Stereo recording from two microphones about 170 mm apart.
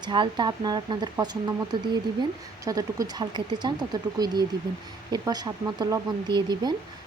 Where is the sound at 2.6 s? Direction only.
20° right (ahead or behind).